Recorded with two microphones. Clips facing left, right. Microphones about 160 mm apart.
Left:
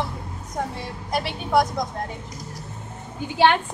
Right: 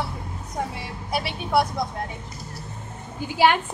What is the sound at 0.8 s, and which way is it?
Speech, 10° right (ahead or behind).